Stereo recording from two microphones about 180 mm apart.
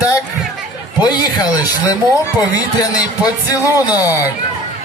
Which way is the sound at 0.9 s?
25° left (ahead or behind).